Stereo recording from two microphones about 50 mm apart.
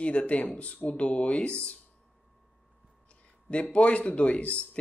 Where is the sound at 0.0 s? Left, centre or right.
Left.